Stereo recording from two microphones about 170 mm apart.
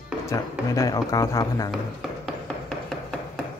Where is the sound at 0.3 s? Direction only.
20° left (ahead or behind).